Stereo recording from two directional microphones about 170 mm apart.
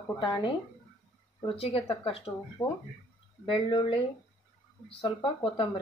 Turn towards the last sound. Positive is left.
turn(degrees=30)  # may be behind; listen again after turning